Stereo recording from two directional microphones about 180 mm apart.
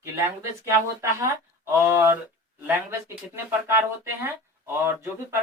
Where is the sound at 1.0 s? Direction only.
15° right (ahead or behind).